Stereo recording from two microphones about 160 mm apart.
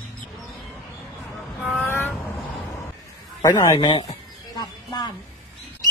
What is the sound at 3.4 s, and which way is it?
Speech, 25° left (ahead or behind).